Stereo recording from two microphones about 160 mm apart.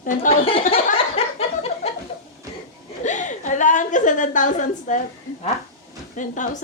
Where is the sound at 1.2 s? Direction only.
35° left (ahead or behind).